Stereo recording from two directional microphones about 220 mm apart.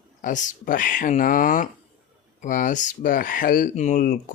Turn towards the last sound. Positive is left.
turn(degrees=40)  # may be behind; listen again after turning